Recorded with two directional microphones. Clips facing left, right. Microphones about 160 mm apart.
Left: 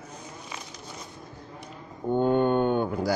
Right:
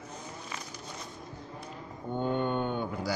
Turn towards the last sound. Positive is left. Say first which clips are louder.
# left 7 dB
turn(degrees=50)  # may be behind; listen again after turning